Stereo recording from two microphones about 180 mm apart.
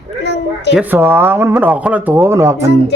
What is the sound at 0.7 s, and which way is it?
Speech, 10° right (ahead or behind).